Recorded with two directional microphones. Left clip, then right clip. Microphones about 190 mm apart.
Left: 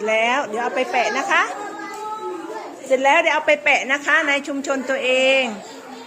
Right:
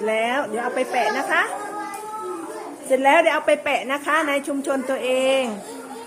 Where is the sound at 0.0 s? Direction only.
20° right (ahead or behind).